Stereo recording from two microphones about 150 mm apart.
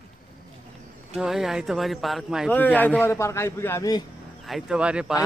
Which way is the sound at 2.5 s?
10° left (ahead or behind).